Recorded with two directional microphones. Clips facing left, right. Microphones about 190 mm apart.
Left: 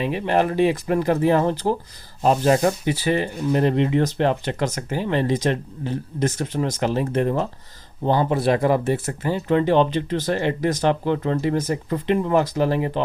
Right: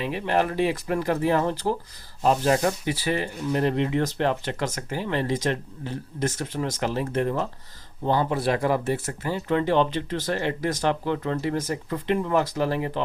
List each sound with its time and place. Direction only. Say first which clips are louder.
0.0 s speech: left 4 dB; 20° left (ahead or behind)